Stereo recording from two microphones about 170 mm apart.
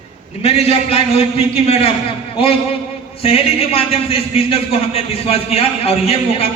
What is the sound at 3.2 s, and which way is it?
A man's voice, 35° left (ahead or behind).